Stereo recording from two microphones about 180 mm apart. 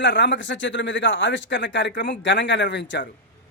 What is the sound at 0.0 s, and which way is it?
Speech, 85° left.